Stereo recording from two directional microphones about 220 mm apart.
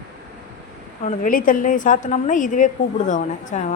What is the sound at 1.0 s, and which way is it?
A woman's voice, 35° left (ahead or behind).